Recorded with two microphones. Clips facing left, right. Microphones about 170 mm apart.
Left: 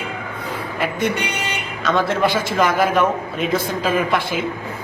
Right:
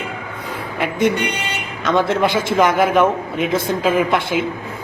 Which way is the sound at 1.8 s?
20° right (ahead or behind).